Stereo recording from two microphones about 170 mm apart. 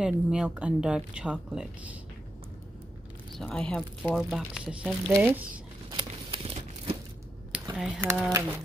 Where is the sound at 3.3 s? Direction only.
5° left (ahead or behind).